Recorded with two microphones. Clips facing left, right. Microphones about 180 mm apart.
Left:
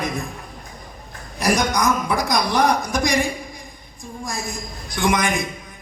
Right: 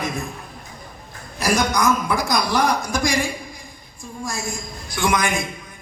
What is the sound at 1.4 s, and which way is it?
A man's voice, 20° left (ahead or behind).